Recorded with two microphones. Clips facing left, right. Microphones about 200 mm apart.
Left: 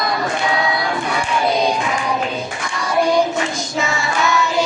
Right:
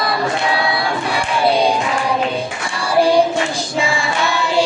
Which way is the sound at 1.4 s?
30° right (ahead or behind).